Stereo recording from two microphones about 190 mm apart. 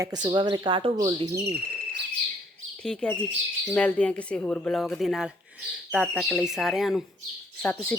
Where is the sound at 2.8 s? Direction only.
5° left (ahead or behind).